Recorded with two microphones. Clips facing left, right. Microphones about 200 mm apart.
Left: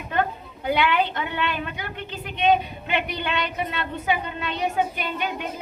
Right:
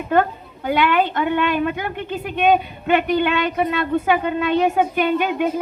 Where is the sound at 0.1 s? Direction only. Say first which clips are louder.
Right 7 dB; 50° right (ahead or behind).